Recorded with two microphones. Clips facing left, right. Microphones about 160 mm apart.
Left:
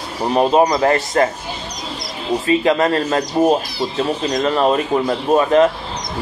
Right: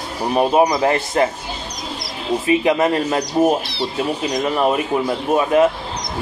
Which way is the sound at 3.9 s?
10° right (ahead or behind).